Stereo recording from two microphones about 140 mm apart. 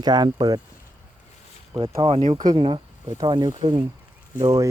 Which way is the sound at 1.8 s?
45° right (ahead or behind).